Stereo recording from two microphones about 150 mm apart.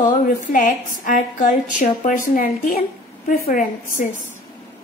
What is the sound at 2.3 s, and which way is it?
A woman's voice, 75° left (ahead or behind).